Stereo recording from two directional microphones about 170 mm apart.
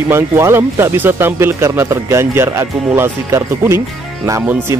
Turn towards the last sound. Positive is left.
turn(degrees=-15)  # may be behind; listen again after turning